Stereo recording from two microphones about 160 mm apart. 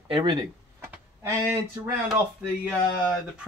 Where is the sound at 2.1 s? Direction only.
10° right (ahead or behind).